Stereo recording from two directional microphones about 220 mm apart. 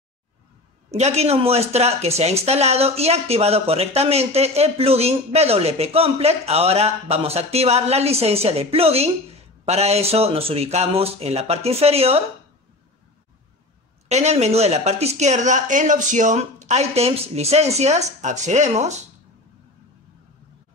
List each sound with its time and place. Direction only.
0.9 s speech: 30° right (ahead or behind)
14.0 s a woman's voice: 30° right (ahead or behind)